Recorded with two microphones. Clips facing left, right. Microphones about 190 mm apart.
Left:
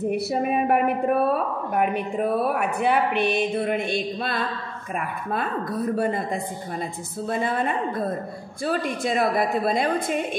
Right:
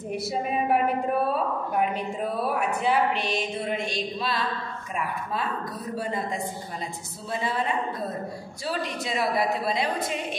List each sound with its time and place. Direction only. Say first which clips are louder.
0.0 s a woman's voice: left 5 dB; 60° left (ahead or behind)